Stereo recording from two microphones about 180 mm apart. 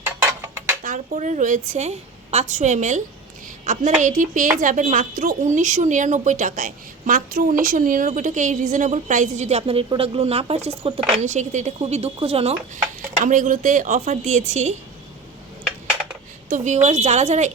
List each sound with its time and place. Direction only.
0.9 s a woman's voice: 45° right (ahead or behind)
16.5 s a woman's voice: 40° right (ahead or behind)